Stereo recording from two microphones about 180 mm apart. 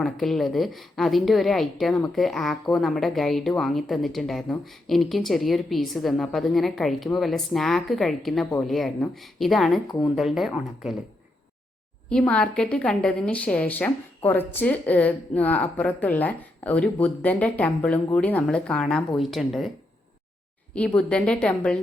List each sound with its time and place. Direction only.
0.0 s a woman's voice: centre (ahead or behind)
9.8 s speech: 25° left (ahead or behind)
10.2 s a woman's voice: centre (ahead or behind)
12.0 s a woman's voice: 5° left (ahead or behind)
20.7 s a woman's voice: 5° left (ahead or behind)